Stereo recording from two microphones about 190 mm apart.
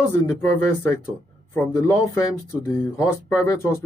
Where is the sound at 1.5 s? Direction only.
15° left (ahead or behind).